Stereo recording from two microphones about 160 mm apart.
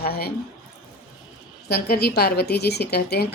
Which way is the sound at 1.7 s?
85° left.